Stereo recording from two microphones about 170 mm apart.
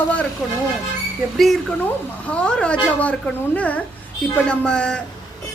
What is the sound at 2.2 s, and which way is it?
A woman's voice, 5° left (ahead or behind).